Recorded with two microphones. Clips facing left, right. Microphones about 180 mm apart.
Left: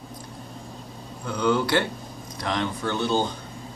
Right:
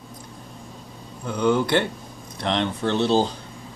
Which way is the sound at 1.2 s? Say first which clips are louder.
Right 2 dB; 20° right (ahead or behind).